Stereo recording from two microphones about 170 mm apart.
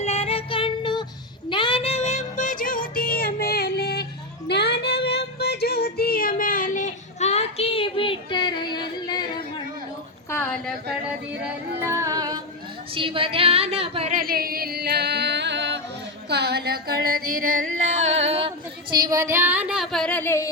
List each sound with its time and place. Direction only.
0.0 s music: 35° left (ahead or behind)
1.5 s child singing: 30° left (ahead or behind); by 4.0 s 70° left (ahead or behind)
4.4 s female singing: 80° left; by 9.2 s 25° left (ahead or behind)
10.2 s a sound: 15° left (ahead or behind)
11.8 s music: 15° right (ahead or behind)
12.9 s a sound: 30° right (ahead or behind)
14.1 s music: 60° right (ahead or behind); by 15.8 s 90° right
16.3 s music: 75° right (ahead or behind); by 18.5 s 35° right (ahead or behind)
18.9 s a sound: 20° right (ahead or behind); by 20.5 s 15° left (ahead or behind)